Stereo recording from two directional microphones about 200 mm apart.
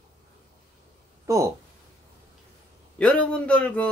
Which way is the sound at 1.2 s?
15° right (ahead or behind).